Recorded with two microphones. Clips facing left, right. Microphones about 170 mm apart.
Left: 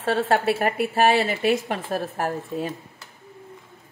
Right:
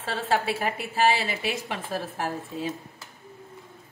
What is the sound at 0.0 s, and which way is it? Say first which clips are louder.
Speech: left 6 dB; 55° left (ahead or behind).